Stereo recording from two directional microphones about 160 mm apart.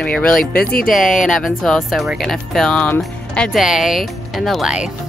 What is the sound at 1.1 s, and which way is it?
Speech, 50° left (ahead or behind).